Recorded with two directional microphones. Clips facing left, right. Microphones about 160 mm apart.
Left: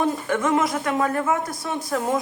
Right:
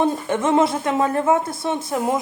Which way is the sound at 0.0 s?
25° right (ahead or behind).